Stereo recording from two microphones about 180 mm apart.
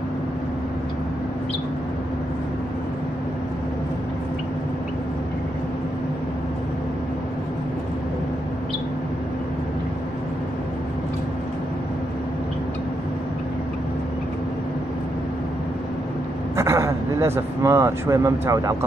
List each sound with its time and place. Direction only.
16.5 s speech: 15° right (ahead or behind)